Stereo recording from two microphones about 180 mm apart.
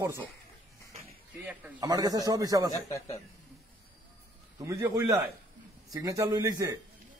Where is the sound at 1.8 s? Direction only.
20° right (ahead or behind).